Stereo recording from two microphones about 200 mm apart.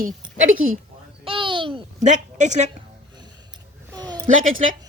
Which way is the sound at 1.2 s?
25° right (ahead or behind).